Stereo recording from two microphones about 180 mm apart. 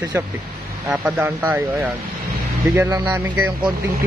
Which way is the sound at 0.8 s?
5° right (ahead or behind).